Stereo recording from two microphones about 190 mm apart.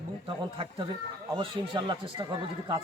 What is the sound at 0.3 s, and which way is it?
Speech, 25° right (ahead or behind).